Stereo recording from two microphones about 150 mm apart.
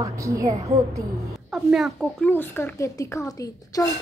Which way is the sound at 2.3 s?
15° left (ahead or behind).